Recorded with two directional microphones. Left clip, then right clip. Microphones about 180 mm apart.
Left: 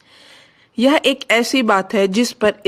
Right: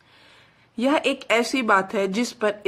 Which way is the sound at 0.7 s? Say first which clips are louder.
Left 7 dB; 30° left (ahead or behind).